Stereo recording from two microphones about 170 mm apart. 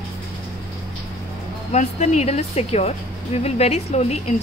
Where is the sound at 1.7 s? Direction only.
40° left (ahead or behind).